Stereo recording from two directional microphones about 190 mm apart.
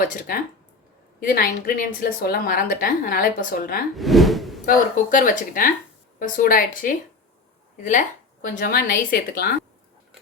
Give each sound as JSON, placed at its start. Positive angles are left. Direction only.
{"t": 0.0, "sound": "a woman's voice", "side_deg": 50}
{"t": 3.9, "sound": "speech", "side_deg": 0}
{"t": 4.6, "sound": "a woman's voice", "side_deg": 45}